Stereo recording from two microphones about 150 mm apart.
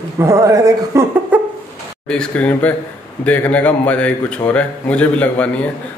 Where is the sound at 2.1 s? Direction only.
5° left (ahead or behind).